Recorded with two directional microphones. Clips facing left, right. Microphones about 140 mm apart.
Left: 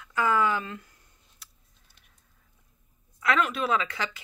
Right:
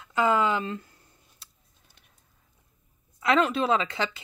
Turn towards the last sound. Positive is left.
turn(degrees=-25)  # may be behind; listen again after turning